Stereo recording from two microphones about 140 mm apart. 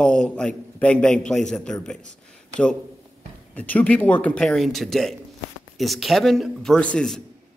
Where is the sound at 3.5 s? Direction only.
10° left (ahead or behind).